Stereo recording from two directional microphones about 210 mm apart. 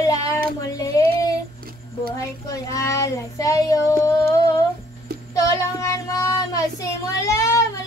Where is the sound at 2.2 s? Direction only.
15° left (ahead or behind).